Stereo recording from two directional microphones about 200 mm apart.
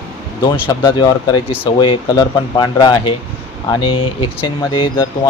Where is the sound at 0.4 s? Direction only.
20° left (ahead or behind).